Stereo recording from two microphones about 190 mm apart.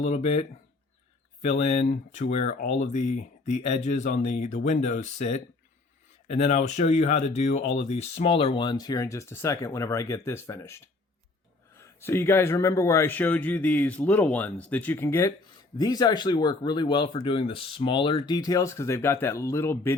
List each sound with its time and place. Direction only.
0.0 s speech: 35° left (ahead or behind); by 20.0 s 10° left (ahead or behind)